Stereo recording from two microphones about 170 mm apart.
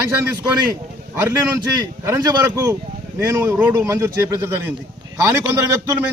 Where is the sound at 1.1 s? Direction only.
15° right (ahead or behind).